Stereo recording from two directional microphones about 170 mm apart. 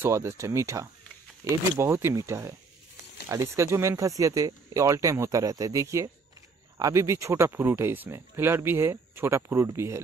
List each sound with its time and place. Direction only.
0.0 s speech: 15° right (ahead or behind)